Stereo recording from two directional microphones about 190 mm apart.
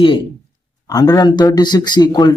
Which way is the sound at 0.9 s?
20° left (ahead or behind).